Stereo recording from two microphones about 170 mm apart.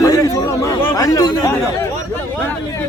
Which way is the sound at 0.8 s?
20° left (ahead or behind).